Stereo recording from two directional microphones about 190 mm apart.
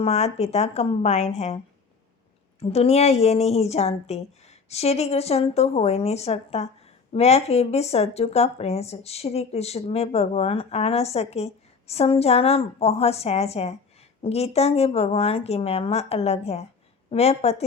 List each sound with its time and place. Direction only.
0.0 s speech: 35° left (ahead or behind)
2.6 s speech: 35° left (ahead or behind)